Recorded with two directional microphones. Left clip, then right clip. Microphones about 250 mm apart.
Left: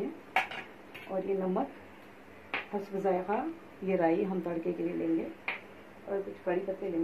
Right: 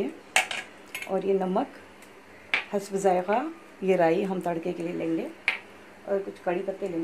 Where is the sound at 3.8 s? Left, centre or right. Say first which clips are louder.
Right 6 dB; right.